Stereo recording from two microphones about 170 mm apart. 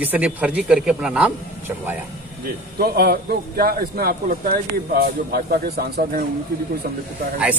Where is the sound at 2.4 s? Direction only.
65° right (ahead or behind).